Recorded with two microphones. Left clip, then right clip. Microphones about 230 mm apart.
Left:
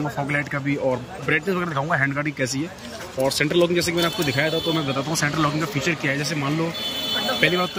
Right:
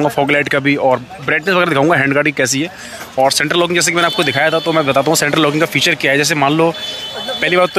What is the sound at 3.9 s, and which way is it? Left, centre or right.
Speech, right.